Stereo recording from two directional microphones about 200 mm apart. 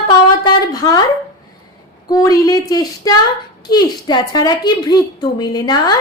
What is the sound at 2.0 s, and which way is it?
A woman's voice, 20° left (ahead or behind).